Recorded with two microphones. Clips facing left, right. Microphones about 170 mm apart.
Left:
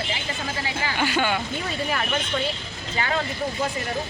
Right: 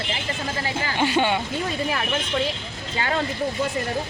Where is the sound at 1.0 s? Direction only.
25° right (ahead or behind).